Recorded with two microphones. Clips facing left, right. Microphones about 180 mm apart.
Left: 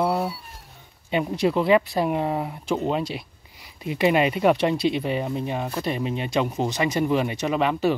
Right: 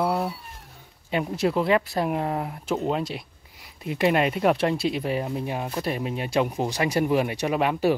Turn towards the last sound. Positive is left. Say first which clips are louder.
# left 1 dB
turn(degrees=-10)  # may be behind; listen again after turning